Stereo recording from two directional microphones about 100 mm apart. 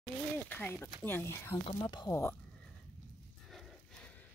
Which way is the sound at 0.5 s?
20° left (ahead or behind).